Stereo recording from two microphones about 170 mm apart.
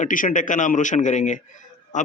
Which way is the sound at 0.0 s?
50° left (ahead or behind).